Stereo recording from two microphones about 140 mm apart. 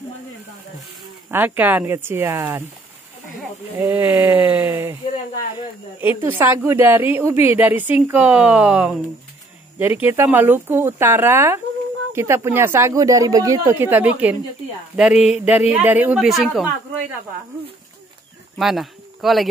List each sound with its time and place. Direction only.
1.3 s a woman's voice: 15° right (ahead or behind)
3.7 s a woman's voice: 15° right (ahead or behind)
6.2 s a woman's voice: 15° right (ahead or behind)
16.3 s speech: centre (ahead or behind)
18.6 s speech: centre (ahead or behind)